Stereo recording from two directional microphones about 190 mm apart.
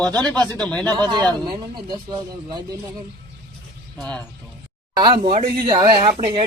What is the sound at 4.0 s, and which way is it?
Speech, 5° left (ahead or behind).